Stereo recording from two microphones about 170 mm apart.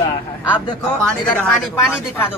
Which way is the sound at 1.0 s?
10° left (ahead or behind).